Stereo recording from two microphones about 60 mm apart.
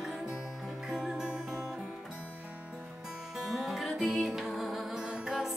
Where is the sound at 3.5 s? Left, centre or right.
Centre.